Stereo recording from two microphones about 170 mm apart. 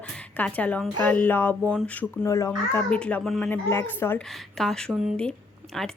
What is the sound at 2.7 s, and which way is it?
Speech, 10° left (ahead or behind).